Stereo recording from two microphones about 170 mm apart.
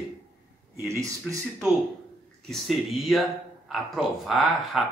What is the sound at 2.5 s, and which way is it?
Speech, centre (ahead or behind).